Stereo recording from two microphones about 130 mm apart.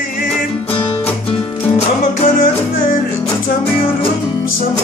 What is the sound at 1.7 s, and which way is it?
Music, 75° left (ahead or behind).